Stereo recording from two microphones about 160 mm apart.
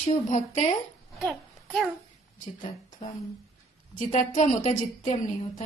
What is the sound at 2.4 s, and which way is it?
Speech, 50° left (ahead or behind).